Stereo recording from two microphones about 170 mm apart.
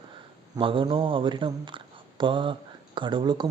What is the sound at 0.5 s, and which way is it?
Speech, 30° right (ahead or behind).